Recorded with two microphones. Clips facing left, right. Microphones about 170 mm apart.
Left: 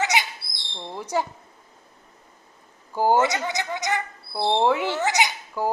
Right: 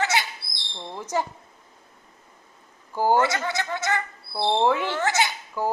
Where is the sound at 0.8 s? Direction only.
10° left (ahead or behind).